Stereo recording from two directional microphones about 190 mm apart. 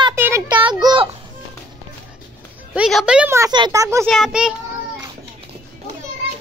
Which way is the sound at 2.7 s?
5° right (ahead or behind).